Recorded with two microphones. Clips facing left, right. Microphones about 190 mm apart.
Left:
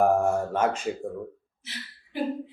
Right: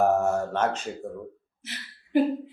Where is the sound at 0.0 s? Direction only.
10° left (ahead or behind).